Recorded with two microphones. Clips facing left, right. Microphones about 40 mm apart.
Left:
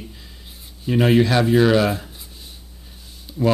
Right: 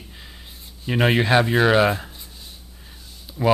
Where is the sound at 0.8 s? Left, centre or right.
Right.